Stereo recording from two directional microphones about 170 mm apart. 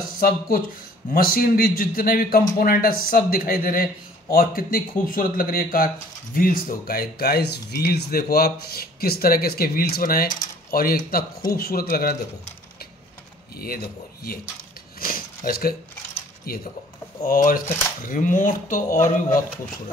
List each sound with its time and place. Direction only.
0.2 s speech: 60° left (ahead or behind)
13.6 s speech: 60° left (ahead or behind)
15.0 s a sound: 60° left (ahead or behind)
16.5 s speech: 60° left (ahead or behind)